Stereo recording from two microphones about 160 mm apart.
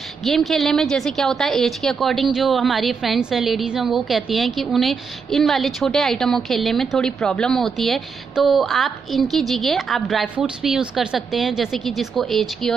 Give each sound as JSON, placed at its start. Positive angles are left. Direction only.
{"t": 0.2, "sound": "a woman's voice", "side_deg": 0}